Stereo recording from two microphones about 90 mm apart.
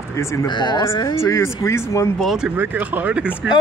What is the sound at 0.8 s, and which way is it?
Speech, 35° left (ahead or behind).